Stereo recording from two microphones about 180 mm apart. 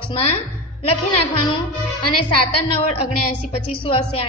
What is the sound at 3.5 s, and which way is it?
Speech, 30° left (ahead or behind).